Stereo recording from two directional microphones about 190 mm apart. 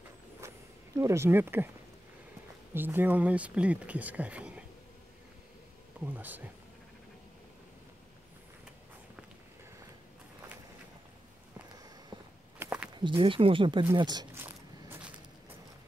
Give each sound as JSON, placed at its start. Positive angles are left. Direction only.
{"t": 0.4, "sound": "a sound", "side_deg": -15}
{"t": 0.9, "sound": "speech", "side_deg": -15}
{"t": 2.7, "sound": "speech", "side_deg": -10}
{"t": 5.9, "sound": "speech", "side_deg": -10}
{"t": 12.5, "sound": "walk", "side_deg": -5}
{"t": 13.0, "sound": "speech", "side_deg": -25}
{"t": 14.4, "sound": "a sound", "side_deg": -10}